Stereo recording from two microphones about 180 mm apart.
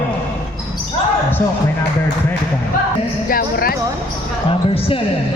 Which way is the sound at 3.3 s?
55° left (ahead or behind).